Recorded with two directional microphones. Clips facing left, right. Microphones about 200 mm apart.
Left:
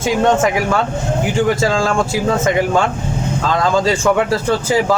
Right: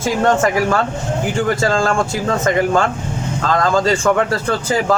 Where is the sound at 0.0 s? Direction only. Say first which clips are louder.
Left 1 dB; centre (ahead or behind).